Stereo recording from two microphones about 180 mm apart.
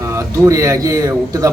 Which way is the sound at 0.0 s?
15° right (ahead or behind).